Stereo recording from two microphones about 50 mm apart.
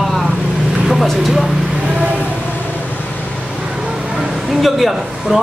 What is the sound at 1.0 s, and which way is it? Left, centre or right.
Speech, centre.